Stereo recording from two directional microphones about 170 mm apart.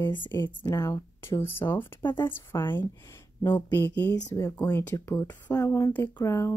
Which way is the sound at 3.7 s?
10° left (ahead or behind).